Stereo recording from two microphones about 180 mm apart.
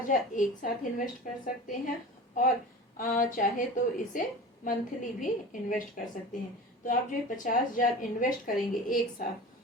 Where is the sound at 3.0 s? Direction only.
50° left (ahead or behind).